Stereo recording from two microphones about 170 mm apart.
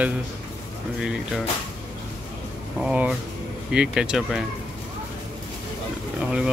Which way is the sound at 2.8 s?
5° right (ahead or behind).